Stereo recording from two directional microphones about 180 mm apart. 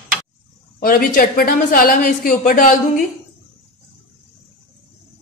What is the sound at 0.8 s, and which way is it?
A woman's voice, 50° left (ahead or behind).